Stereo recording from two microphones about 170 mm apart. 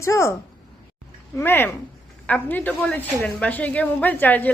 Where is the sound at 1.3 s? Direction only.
10° left (ahead or behind).